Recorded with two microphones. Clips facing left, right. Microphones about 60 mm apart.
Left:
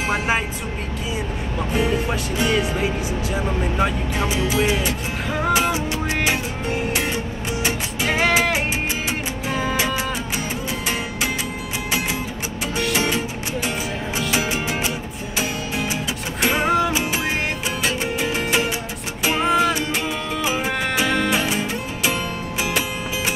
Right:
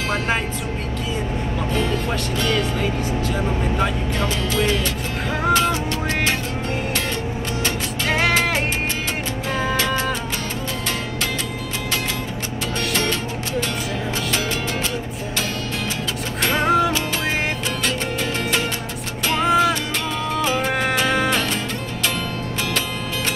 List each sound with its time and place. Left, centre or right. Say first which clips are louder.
1.7 s speech: left 2 dB; centre
5.5 s music: right 1 dB; centre
12.7 s music: left 2 dB; centre
16.4 s music: right 1 dB; centre